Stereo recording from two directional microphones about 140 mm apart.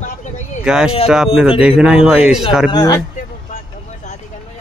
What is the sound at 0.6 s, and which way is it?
Speech, 5° right (ahead or behind).